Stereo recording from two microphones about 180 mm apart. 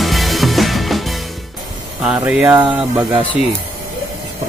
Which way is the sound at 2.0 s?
5° right (ahead or behind).